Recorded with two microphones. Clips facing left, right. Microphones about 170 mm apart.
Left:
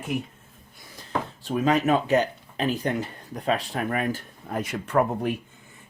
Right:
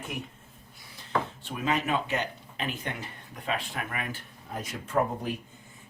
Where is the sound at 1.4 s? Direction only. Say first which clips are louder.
Left 7 dB; 40° left (ahead or behind).